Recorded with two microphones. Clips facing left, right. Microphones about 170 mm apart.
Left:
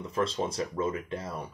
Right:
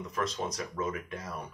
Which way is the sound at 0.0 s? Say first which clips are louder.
Left 4 dB; 30° left (ahead or behind).